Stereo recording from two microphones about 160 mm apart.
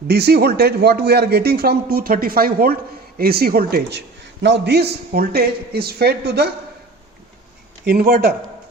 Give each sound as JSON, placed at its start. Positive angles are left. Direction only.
{"t": 0.1, "sound": "a man's voice", "side_deg": -80}
{"t": 7.9, "sound": "a man's voice", "side_deg": -70}